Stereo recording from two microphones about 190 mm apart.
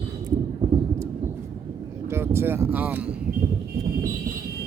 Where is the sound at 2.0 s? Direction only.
15° right (ahead or behind).